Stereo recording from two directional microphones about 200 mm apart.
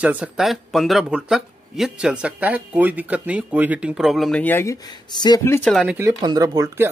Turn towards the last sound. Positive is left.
turn(degrees=-15)  # may be behind; listen again after turning